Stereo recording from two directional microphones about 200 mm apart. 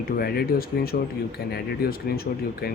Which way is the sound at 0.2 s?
50° left (ahead or behind).